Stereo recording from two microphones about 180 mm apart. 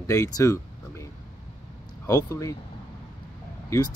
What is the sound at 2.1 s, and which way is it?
Speech, 20° left (ahead or behind).